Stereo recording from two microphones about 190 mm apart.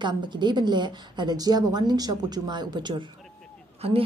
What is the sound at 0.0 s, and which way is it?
Speech, 25° right (ahead or behind).